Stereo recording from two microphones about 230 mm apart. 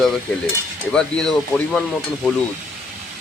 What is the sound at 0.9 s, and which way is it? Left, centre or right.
Speech, centre.